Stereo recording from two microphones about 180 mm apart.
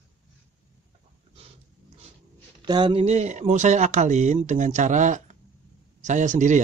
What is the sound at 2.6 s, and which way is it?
Speech, 25° right (ahead or behind).